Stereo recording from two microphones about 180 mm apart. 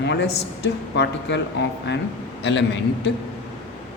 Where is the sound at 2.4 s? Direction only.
75° left (ahead or behind).